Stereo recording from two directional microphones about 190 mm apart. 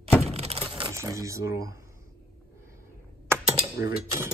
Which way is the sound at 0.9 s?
15° right (ahead or behind).